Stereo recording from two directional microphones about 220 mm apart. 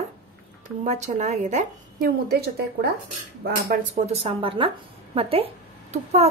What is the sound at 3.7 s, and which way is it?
A woman's voice, 30° right (ahead or behind).